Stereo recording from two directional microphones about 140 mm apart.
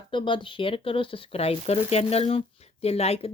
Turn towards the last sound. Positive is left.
turn(degrees=50)  # may be behind; listen again after turning